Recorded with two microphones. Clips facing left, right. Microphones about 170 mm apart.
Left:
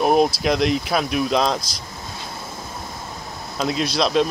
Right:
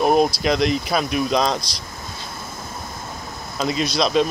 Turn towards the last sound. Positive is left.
turn(degrees=0)  # may be behind; listen again after turning